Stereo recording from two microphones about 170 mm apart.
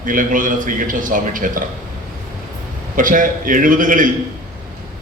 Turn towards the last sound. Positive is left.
turn(degrees=-50)  # may be behind; listen again after turning